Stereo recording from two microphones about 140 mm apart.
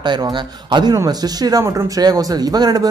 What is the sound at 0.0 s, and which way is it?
Speech, 35° right (ahead or behind).